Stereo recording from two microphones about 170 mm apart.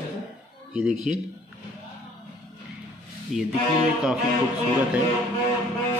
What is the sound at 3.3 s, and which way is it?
Speech, 45° right (ahead or behind).